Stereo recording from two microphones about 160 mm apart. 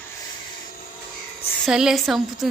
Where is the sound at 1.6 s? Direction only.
5° right (ahead or behind).